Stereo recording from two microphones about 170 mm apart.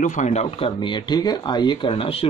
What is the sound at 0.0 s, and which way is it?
A man's voice, 45° left (ahead or behind).